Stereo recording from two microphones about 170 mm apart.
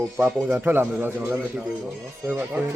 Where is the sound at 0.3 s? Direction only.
10° right (ahead or behind).